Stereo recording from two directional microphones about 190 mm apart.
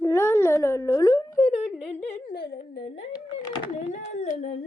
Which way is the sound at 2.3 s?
55° left (ahead or behind).